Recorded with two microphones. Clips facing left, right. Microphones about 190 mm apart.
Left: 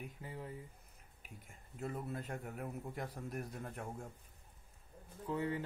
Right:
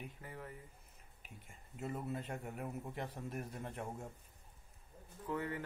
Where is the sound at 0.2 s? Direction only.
20° left (ahead or behind).